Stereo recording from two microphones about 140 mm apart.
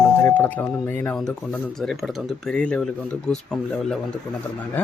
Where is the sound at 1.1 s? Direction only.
5° left (ahead or behind).